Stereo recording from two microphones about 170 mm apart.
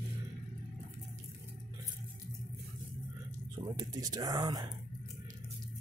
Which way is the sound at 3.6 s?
30° right (ahead or behind).